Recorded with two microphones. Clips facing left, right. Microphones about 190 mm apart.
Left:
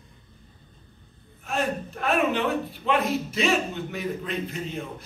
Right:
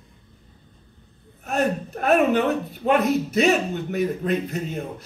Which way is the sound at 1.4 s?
40° right (ahead or behind).